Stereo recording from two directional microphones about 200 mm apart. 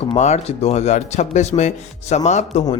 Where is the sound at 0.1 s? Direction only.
35° left (ahead or behind).